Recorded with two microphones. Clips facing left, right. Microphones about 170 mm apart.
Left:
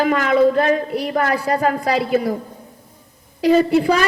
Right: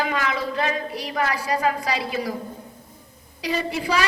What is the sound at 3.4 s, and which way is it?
Speech, 55° left (ahead or behind).